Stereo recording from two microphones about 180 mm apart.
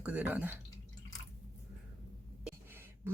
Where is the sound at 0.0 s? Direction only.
10° right (ahead or behind).